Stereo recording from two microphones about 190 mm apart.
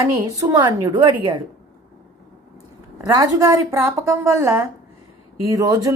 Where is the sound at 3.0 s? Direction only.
20° right (ahead or behind).